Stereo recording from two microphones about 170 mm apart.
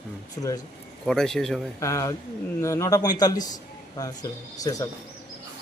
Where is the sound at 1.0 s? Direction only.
5° left (ahead or behind).